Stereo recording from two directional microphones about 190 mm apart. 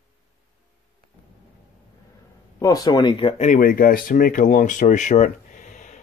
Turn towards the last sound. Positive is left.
turn(degrees=40)  # may be behind; listen again after turning